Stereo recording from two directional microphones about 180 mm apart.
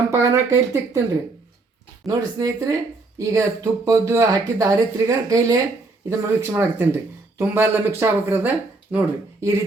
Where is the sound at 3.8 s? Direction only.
15° right (ahead or behind).